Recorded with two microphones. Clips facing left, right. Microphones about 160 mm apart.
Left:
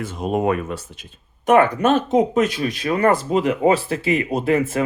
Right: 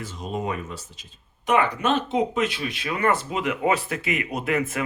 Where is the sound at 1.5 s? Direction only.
45° left (ahead or behind).